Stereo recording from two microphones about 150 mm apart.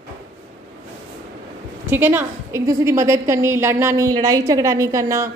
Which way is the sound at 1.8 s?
15° right (ahead or behind).